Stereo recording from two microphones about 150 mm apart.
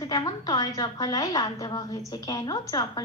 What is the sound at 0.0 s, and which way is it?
A woman's voice, 25° left (ahead or behind).